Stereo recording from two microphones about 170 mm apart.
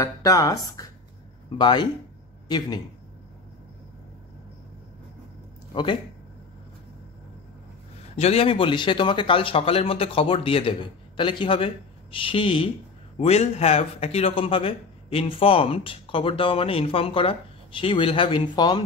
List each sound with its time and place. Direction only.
0.0 s a woman's voice: 20° left (ahead or behind)
8.2 s a man's voice: 35° left (ahead or behind)